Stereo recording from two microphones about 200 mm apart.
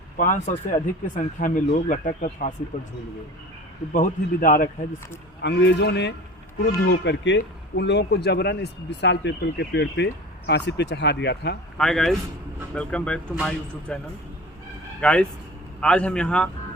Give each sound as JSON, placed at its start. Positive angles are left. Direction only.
{"t": 0.2, "sound": "speech", "side_deg": 40}
{"t": 3.9, "sound": "a man's voice", "side_deg": 40}
{"t": 5.4, "sound": "speech", "side_deg": 60}
{"t": 11.8, "sound": "a man's voice", "side_deg": 0}
{"t": 15.0, "sound": "a man's voice", "side_deg": 5}